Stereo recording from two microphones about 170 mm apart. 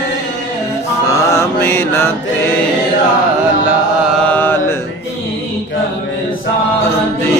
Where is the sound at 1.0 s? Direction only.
15° left (ahead or behind).